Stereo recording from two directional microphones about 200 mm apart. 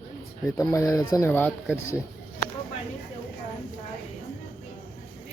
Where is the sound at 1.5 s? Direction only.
10° right (ahead or behind).